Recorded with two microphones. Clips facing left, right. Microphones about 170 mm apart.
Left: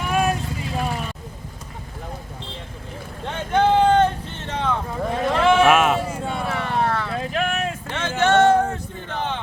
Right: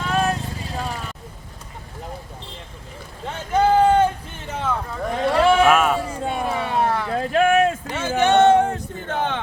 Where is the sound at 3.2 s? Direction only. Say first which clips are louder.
Even; 5° right (ahead or behind).